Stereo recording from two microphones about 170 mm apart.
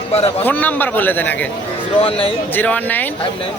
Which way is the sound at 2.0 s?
35° left (ahead or behind).